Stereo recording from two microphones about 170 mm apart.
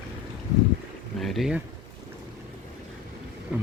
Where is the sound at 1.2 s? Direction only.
Centre (ahead or behind).